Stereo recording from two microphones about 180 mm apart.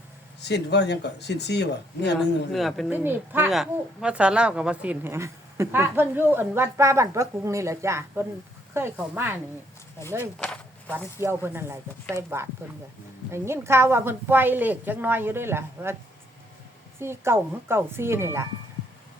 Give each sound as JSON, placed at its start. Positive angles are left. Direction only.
{"t": 0.3, "sound": "speech", "side_deg": 70}
{"t": 2.5, "sound": "a woman's voice", "side_deg": 0}
{"t": 2.9, "sound": "speech", "side_deg": -10}
{"t": 10.8, "sound": "speech", "side_deg": -10}
{"t": 17.0, "sound": "speech", "side_deg": -15}